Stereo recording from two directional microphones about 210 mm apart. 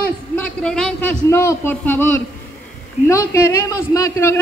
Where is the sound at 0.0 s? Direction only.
5° left (ahead or behind).